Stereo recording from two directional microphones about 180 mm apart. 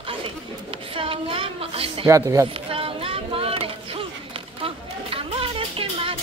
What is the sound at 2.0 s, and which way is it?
Speech, 20° right (ahead or behind).